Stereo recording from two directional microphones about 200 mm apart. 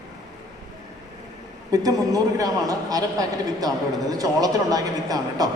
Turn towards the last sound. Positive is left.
turn(degrees=-20)  # may be behind; listen again after turning